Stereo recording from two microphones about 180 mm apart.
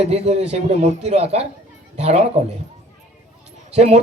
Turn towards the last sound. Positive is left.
turn(degrees=-35)  # may be behind; listen again after turning